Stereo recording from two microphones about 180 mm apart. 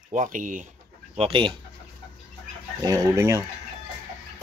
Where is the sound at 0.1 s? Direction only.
45° right (ahead or behind).